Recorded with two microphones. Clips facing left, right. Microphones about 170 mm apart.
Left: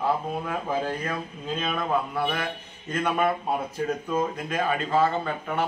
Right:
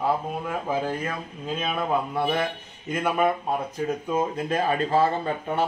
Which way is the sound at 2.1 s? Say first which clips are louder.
Right 3 dB; 25° right (ahead or behind).